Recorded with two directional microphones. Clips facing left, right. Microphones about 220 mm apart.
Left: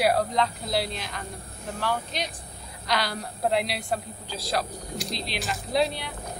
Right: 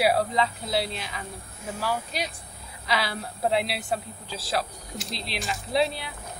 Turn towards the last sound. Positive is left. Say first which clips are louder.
# even
turn(degrees=0)  # may be behind; listen again after turning